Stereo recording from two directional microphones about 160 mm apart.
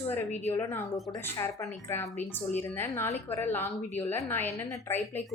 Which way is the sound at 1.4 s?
15° left (ahead or behind).